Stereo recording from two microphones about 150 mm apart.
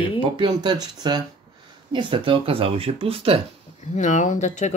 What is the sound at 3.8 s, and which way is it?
Speech, 55° left (ahead or behind).